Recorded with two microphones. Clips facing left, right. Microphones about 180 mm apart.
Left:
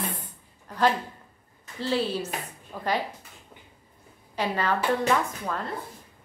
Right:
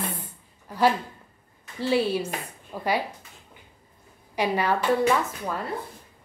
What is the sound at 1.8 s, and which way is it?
A woman's voice, 10° right (ahead or behind).